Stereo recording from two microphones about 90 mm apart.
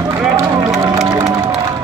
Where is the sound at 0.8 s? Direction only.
40° right (ahead or behind).